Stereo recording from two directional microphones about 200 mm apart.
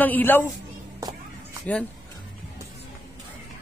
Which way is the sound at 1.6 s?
5° left (ahead or behind).